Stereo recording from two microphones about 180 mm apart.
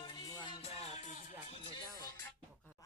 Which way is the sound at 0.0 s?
25° left (ahead or behind).